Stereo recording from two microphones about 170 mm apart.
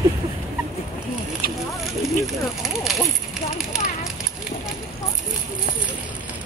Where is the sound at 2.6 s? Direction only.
Centre (ahead or behind).